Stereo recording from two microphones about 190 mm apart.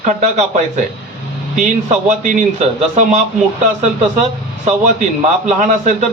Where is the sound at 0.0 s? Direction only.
40° right (ahead or behind).